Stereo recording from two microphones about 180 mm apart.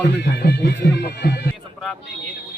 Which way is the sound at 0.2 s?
60° left (ahead or behind).